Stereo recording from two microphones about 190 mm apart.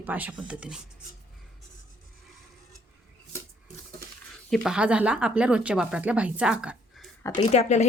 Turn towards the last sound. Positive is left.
turn(degrees=35)  # may be behind; listen again after turning